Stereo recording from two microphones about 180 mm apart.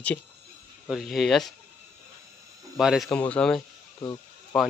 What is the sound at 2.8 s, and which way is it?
A man's voice, centre (ahead or behind).